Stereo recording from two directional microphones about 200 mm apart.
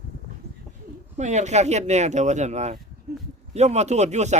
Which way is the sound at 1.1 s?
35° right (ahead or behind).